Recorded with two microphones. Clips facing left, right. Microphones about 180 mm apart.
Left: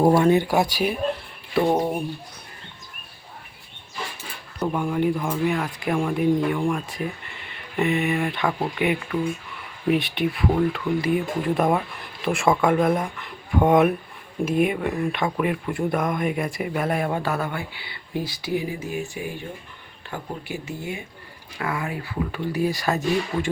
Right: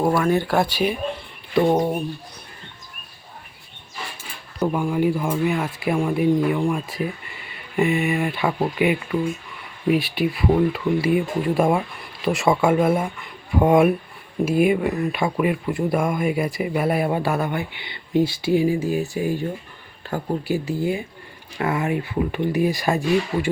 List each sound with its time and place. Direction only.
0.0 s speech: 25° left (ahead or behind); by 1.9 s 5° left (ahead or behind)
4.6 s speech: 10° right (ahead or behind)